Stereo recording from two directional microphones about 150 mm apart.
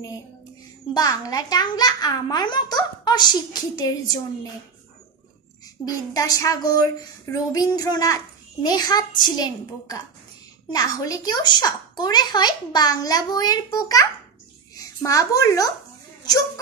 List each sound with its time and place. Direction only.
0.9 s speech: 25° left (ahead or behind)
5.9 s a child's voice: 25° left (ahead or behind)